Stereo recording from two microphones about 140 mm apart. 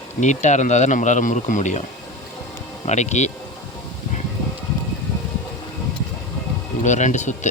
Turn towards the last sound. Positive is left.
turn(degrees=60)  # may be behind; listen again after turning